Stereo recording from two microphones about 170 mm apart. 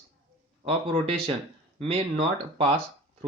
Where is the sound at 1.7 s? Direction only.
35° right (ahead or behind).